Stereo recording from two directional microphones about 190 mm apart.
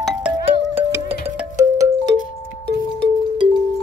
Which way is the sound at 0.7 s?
10° right (ahead or behind).